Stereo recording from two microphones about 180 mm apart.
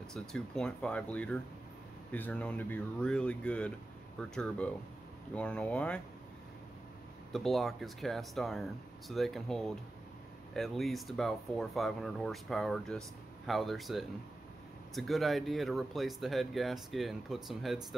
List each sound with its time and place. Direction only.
0.1 s speech: 5° left (ahead or behind)
7.3 s speech: centre (ahead or behind)